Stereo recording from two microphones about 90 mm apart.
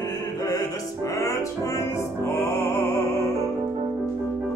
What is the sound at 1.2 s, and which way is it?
Music, 35° left (ahead or behind).